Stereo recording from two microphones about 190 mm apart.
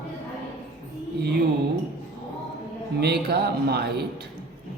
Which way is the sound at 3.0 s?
55° right (ahead or behind).